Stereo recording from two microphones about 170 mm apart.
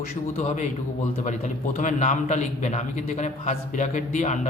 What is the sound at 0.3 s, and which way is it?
A man's voice, 40° left (ahead or behind).